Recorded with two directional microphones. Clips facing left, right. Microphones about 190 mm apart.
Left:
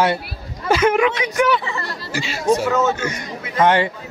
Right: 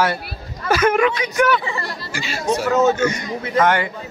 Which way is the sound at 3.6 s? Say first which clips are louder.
Left 2 dB; 25° left (ahead or behind).